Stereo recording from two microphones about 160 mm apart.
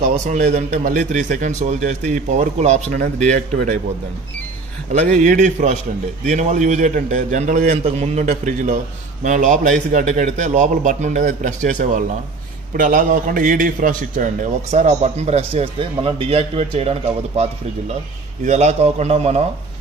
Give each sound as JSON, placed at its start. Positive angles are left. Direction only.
{"t": 0.0, "sound": "a man's voice", "side_deg": -50}
{"t": 4.9, "sound": "a man's voice", "side_deg": -45}